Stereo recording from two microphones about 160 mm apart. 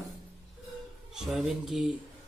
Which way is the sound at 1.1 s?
Centre (ahead or behind).